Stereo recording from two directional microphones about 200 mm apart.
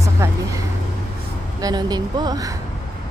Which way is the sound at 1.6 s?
20° right (ahead or behind).